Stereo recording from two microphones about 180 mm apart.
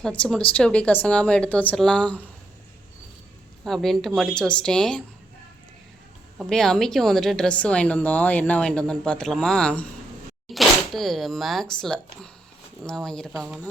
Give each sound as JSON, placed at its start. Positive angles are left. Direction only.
{"t": 0.0, "sound": "speech", "side_deg": 5}
{"t": 3.6, "sound": "speech", "side_deg": 0}
{"t": 6.4, "sound": "speech", "side_deg": 5}